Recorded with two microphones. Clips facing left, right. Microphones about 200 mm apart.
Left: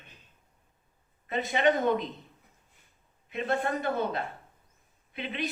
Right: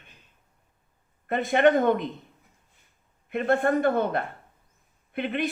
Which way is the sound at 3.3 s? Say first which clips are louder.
Right 7 dB; 55° right (ahead or behind).